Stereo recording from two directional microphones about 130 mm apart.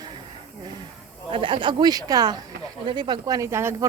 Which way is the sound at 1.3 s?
40° right (ahead or behind).